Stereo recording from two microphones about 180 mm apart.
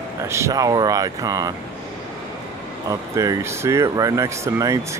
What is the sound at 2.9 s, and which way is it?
Speech, 20° right (ahead or behind).